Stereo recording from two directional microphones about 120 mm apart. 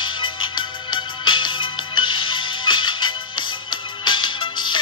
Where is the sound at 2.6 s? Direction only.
40° left (ahead or behind).